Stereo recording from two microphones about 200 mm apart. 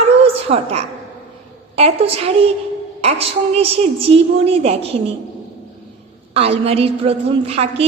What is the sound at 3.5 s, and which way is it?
Speech, 30° right (ahead or behind).